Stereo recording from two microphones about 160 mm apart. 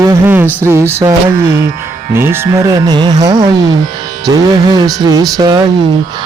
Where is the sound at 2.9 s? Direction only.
25° right (ahead or behind).